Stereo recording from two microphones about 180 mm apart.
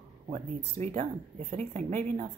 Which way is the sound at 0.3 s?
40° right (ahead or behind).